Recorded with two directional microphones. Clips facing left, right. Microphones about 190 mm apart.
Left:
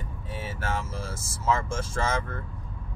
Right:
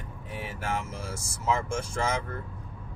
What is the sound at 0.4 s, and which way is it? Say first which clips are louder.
Speech: even; 15° right (ahead or behind).